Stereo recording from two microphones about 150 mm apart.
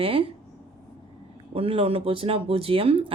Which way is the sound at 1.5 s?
40° right (ahead or behind).